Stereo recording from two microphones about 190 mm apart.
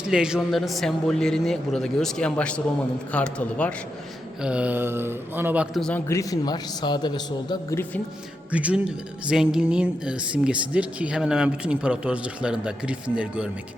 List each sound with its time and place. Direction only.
0.1 s a man's voice: 5° right (ahead or behind)
4.4 s a man's voice: 5° right (ahead or behind)
5.8 s a man's voice: 10° left (ahead or behind)
8.5 s speech: 5° right (ahead or behind)